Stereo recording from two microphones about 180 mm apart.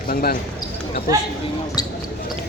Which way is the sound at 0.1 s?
55° left (ahead or behind).